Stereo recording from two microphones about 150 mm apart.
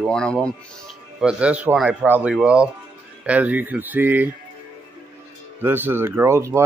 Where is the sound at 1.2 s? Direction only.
5° right (ahead or behind).